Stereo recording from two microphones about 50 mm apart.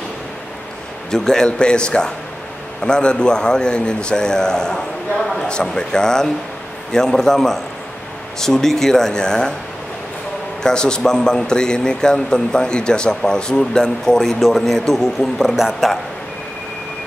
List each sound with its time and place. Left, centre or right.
1.1 s a man's voice: centre
10.6 s a man's voice: centre
15.5 s speech: centre